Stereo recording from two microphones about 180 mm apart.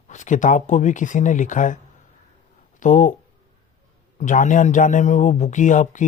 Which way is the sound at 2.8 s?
45° left (ahead or behind).